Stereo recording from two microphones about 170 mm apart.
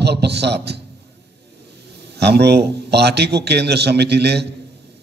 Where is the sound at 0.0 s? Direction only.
75° right (ahead or behind).